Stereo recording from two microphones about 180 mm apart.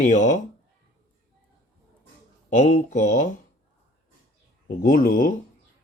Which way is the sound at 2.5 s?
40° left (ahead or behind).